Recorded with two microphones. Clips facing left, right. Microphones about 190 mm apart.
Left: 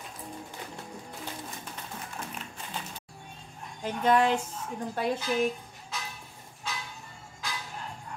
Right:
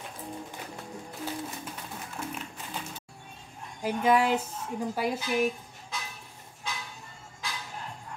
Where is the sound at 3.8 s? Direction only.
10° right (ahead or behind).